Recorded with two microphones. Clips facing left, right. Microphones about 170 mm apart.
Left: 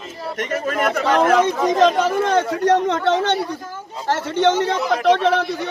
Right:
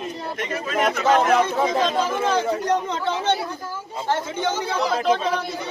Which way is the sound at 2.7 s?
70° left (ahead or behind).